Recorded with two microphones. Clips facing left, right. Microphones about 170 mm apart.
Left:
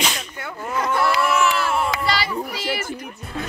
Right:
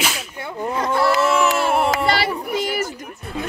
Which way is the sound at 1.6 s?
55° right (ahead or behind).